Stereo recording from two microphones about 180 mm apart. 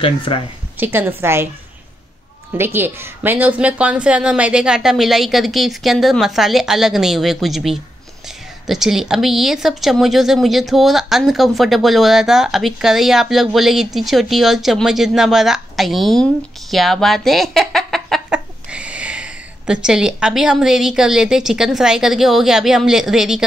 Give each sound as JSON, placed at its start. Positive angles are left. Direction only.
{"t": 0.0, "sound": "speech", "side_deg": 30}
{"t": 0.7, "sound": "a woman's voice", "side_deg": -10}
{"t": 2.5, "sound": "a woman's voice", "side_deg": -10}